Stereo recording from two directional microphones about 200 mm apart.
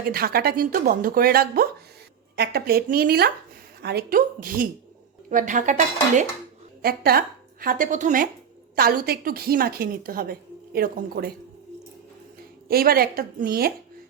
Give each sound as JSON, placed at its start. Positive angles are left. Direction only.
{"t": 0.0, "sound": "a woman's voice", "side_deg": -50}
{"t": 6.8, "sound": "a woman's voice", "side_deg": -50}
{"t": 12.6, "sound": "a woman's voice", "side_deg": -50}